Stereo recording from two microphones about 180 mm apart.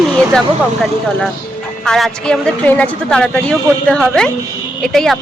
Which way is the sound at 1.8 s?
Centre (ahead or behind).